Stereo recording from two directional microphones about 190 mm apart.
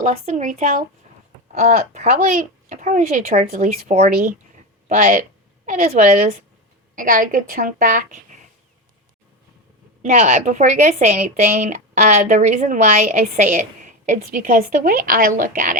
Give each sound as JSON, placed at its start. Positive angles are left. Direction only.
{"t": 0.0, "sound": "speech", "side_deg": -40}
{"t": 10.0, "sound": "speech", "side_deg": -40}